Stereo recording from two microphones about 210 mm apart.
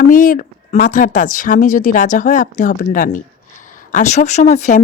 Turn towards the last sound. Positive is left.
turn(degrees=35)  # may be behind; listen again after turning